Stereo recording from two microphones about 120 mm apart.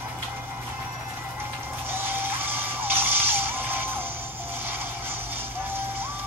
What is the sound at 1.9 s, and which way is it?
Vehicle, 20° right (ahead or behind).